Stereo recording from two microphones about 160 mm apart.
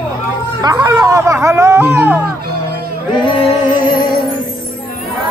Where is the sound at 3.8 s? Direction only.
65° left (ahead or behind).